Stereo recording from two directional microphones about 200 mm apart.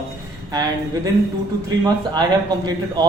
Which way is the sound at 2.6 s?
20° right (ahead or behind).